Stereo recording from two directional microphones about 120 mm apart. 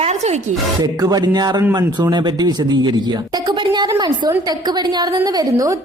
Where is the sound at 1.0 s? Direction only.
30° right (ahead or behind).